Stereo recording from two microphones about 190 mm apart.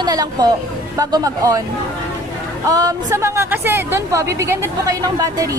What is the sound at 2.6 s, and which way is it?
A woman's voice, 20° right (ahead or behind).